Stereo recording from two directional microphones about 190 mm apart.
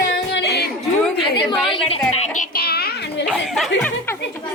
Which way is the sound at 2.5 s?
55° left (ahead or behind).